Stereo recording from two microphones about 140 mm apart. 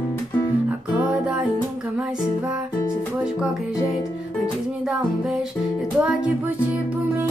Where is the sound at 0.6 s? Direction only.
10° right (ahead or behind).